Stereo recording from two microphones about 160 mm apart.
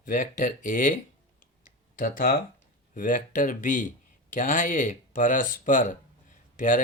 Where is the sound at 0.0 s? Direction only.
55° left (ahead or behind).